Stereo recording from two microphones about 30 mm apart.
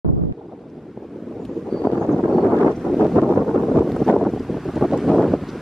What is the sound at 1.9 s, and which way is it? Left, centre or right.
Vehicle, left.